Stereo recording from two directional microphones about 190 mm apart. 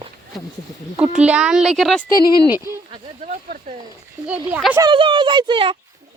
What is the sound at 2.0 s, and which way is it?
Speech, 20° left (ahead or behind).